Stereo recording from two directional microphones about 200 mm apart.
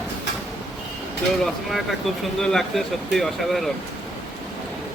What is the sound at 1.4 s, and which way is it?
Speech, centre (ahead or behind).